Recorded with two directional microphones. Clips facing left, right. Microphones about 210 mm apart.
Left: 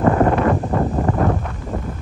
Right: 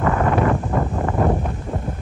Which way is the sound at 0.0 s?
30° left (ahead or behind).